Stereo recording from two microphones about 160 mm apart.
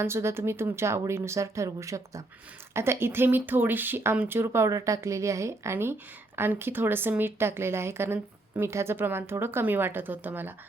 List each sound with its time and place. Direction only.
0.0 s speech: 15° right (ahead or behind)